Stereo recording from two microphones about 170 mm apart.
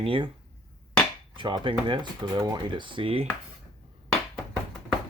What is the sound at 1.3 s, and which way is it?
Speech, 30° right (ahead or behind).